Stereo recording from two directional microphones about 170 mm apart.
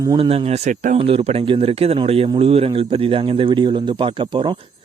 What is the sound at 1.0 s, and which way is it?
Speech, 35° right (ahead or behind).